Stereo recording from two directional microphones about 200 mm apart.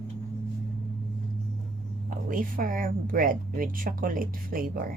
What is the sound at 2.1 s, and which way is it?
Speech, 45° right (ahead or behind).